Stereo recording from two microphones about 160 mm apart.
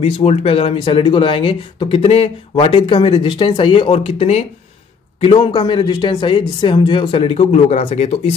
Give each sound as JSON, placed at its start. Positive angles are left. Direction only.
{"t": 0.0, "sound": "speech", "side_deg": 40}